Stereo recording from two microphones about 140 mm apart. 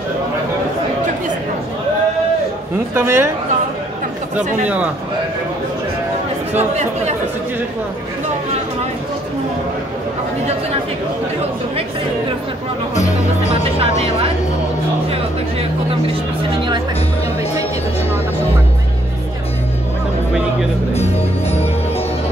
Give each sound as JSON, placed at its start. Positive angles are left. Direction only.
{"t": 2.9, "sound": "speech", "side_deg": -15}
{"t": 4.4, "sound": "speech", "side_deg": -10}
{"t": 13.7, "sound": "speech", "side_deg": -45}
{"t": 20.9, "sound": "speech", "side_deg": 50}